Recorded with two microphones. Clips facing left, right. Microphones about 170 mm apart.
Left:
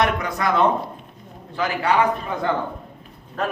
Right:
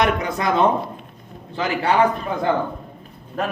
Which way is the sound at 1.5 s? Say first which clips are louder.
Right 1 dB; 25° right (ahead or behind).